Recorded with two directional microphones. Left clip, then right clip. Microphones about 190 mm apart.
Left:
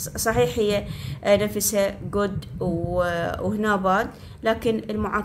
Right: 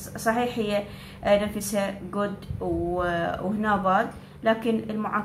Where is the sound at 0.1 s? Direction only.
50° left (ahead or behind).